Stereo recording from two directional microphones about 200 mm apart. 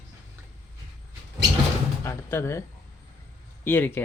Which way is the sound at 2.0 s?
15° left (ahead or behind).